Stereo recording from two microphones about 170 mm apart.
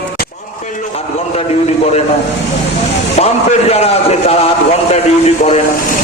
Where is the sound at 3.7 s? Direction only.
35° left (ahead or behind).